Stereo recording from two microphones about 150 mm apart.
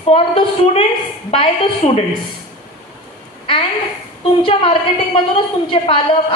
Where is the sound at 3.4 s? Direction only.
35° left (ahead or behind).